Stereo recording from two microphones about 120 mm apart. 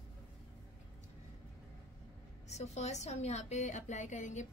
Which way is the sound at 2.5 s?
70° left (ahead or behind).